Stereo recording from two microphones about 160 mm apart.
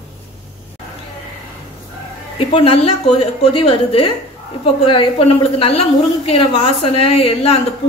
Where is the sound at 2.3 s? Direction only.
40° left (ahead or behind).